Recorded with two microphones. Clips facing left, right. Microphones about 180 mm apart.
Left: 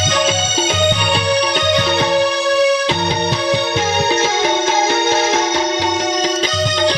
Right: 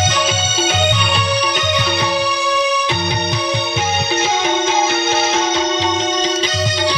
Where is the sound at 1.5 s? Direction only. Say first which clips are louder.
Left 3 dB; 45° left (ahead or behind).